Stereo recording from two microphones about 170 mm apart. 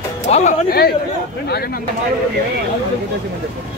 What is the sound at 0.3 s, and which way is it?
Speech, 45° left (ahead or behind).